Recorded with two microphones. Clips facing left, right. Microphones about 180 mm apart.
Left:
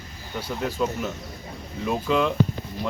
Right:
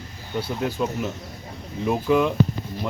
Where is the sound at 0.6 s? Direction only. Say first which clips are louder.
Left 1 dB; 15° right (ahead or behind).